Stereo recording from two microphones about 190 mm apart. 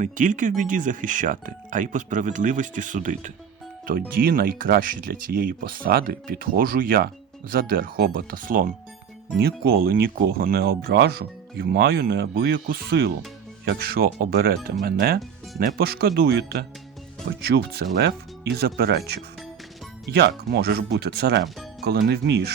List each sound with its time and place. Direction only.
0.0 s speech: 45° right (ahead or behind)